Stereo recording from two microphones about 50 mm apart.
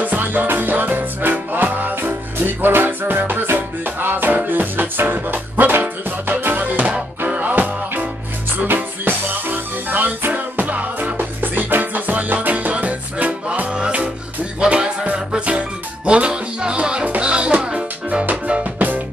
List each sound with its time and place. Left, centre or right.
0.0 s music: right
6.6 s music: right
13.7 s music: right